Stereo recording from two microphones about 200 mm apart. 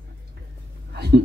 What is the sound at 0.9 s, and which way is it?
Speech, 55° right (ahead or behind).